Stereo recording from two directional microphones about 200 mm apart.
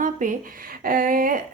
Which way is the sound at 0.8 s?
45° right (ahead or behind).